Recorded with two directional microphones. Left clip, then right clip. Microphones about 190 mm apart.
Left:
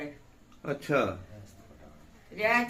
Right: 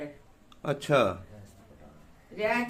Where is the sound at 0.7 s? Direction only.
45° right (ahead or behind).